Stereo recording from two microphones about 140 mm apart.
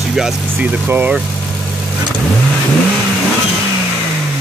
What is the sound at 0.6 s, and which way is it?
Speech, 15° right (ahead or behind).